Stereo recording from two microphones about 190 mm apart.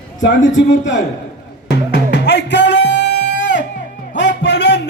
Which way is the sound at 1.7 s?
65° left (ahead or behind).